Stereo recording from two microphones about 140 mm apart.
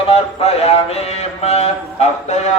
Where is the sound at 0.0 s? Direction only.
45° left (ahead or behind).